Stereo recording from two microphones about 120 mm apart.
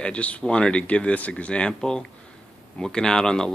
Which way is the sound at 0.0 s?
10° left (ahead or behind).